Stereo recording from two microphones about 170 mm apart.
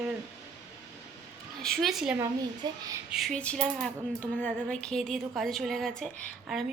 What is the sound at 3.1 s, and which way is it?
Speech, centre (ahead or behind).